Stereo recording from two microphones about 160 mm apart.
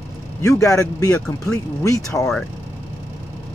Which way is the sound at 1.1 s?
5° left (ahead or behind).